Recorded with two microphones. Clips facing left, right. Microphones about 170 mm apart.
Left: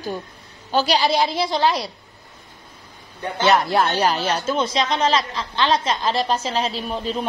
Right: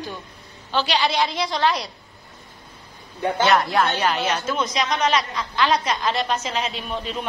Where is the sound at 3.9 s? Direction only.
35° left (ahead or behind).